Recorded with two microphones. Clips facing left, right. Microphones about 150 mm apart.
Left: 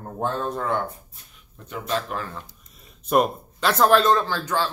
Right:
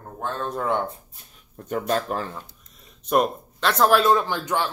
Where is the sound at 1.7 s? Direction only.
45° right (ahead or behind).